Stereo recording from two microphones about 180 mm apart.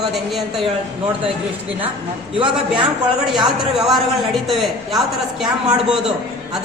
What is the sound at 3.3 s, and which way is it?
A man's voice, centre (ahead or behind).